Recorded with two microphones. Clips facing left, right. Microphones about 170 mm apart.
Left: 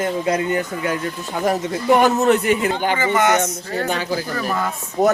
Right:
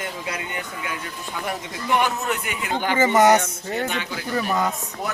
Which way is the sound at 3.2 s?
35° right (ahead or behind).